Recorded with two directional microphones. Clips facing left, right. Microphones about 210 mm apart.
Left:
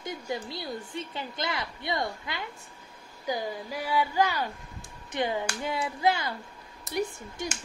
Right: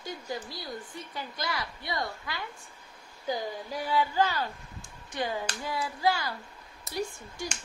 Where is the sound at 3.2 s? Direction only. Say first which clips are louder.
Left 1 dB; 10° left (ahead or behind).